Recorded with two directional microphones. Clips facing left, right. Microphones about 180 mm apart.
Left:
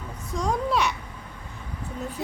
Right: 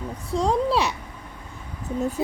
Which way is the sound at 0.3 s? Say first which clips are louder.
Right 4 dB; 30° right (ahead or behind).